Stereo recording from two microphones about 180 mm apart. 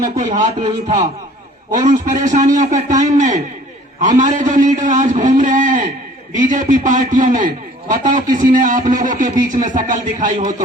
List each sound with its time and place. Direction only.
0.0 s a man's voice: 45° right (ahead or behind)